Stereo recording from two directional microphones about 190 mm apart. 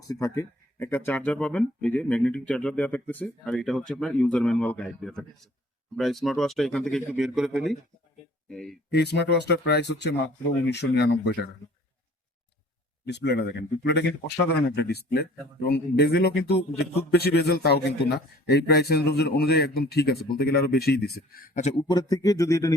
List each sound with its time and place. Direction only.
0.1 s speech: 15° left (ahead or behind); by 8.8 s centre (ahead or behind)
8.9 s speech: 60° left (ahead or behind)
13.1 s speech: 65° left (ahead or behind); by 22.7 s 15° left (ahead or behind)